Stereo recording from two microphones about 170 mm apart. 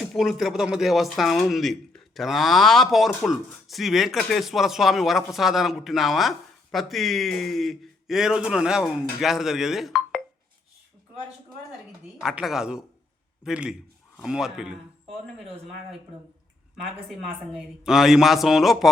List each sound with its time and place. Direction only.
0.0 s speech: centre (ahead or behind)
12.2 s speech: 5° right (ahead or behind)
16.8 s speech: centre (ahead or behind)